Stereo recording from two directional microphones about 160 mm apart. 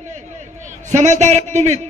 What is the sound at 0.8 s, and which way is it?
Speech, 45° right (ahead or behind).